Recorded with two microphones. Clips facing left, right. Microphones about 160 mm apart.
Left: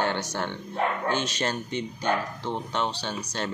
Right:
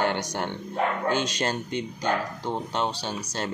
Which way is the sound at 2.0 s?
10° right (ahead or behind).